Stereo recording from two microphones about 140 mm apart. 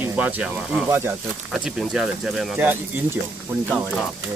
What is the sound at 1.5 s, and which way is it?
Speech, centre (ahead or behind).